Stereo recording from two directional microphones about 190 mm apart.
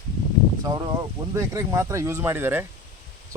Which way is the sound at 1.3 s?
15° right (ahead or behind).